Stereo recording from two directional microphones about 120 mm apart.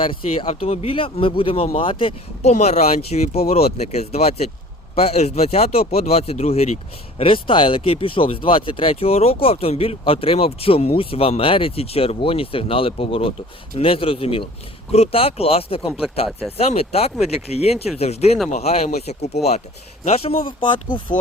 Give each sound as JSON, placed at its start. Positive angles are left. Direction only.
{"t": 0.0, "sound": "speech", "side_deg": 50}
{"t": 2.4, "sound": "speech", "side_deg": 65}
{"t": 7.2, "sound": "speech", "side_deg": 50}
{"t": 20.9, "sound": "speech", "side_deg": 90}